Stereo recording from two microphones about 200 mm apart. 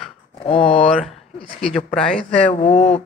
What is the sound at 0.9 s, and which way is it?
Speech, centre (ahead or behind).